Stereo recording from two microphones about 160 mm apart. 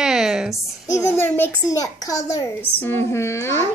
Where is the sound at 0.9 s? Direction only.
15° left (ahead or behind).